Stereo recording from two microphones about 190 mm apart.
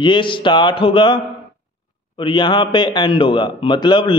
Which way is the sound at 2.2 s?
25° left (ahead or behind).